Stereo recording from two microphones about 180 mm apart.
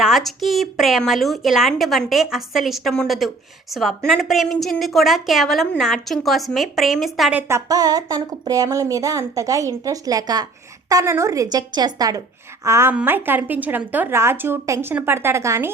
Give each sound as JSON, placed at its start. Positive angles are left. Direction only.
{"t": 0.0, "sound": "a woman's voice", "side_deg": 0}